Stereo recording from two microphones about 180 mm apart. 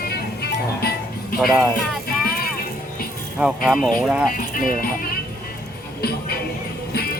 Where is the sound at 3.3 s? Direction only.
5° right (ahead or behind).